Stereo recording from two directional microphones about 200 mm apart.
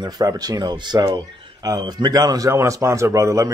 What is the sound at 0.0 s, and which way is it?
Speech, 20° right (ahead or behind).